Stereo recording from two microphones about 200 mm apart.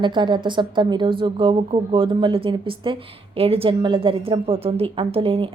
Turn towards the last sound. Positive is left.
turn(degrees=-25)  # may be behind; listen again after turning